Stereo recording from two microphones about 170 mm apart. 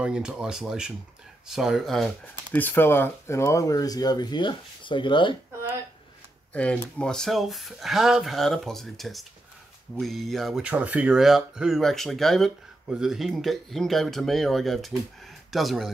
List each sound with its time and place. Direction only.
0.0 s speech: 5° right (ahead or behind)
2.6 s speech: 15° left (ahead or behind); by 5.3 s 30° left (ahead or behind)
6.5 s speech: 5° left (ahead or behind)